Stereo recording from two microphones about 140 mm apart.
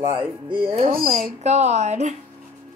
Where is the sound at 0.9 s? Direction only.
75° right (ahead or behind).